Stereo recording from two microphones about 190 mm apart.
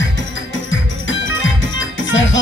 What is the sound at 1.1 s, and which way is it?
Music, 80° left.